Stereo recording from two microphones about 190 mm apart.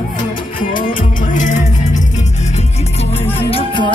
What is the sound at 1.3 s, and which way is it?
Music, 40° left (ahead or behind).